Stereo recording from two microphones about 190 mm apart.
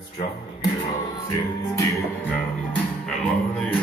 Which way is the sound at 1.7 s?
15° left (ahead or behind).